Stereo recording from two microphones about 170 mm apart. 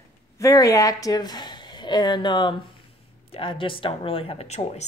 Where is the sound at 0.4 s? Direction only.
20° left (ahead or behind).